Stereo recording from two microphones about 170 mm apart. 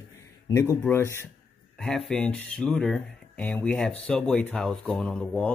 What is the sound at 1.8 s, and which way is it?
Speech, centre (ahead or behind).